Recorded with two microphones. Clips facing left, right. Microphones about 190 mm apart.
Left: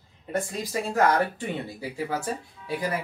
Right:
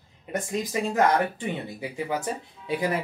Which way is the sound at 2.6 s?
20° right (ahead or behind).